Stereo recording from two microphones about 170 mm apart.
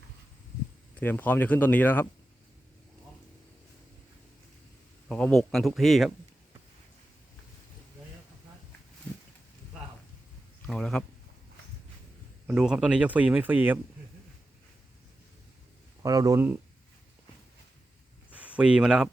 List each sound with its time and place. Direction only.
0.9 s speech: 10° left (ahead or behind)
5.0 s speech: 5° left (ahead or behind)
9.1 s a sound: 5° left (ahead or behind)
10.7 s speech: 5° left (ahead or behind)
12.5 s speech: 5° right (ahead or behind)
16.0 s speech: 20° right (ahead or behind)
18.3 s speech: 10° right (ahead or behind)